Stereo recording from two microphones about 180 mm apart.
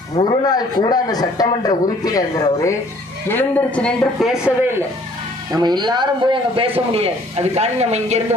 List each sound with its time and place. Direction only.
0.2 s a man's voice: 25° left (ahead or behind)
3.2 s a man's voice: 10° left (ahead or behind)
5.5 s speech: 25° right (ahead or behind)